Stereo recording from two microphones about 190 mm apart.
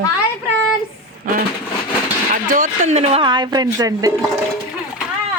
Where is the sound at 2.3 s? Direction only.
45° right (ahead or behind); by 4.1 s 20° right (ahead or behind).